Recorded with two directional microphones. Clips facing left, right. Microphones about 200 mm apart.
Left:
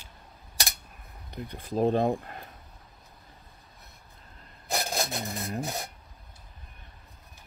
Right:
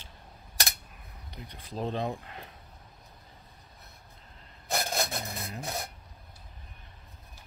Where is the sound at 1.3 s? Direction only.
50° left (ahead or behind).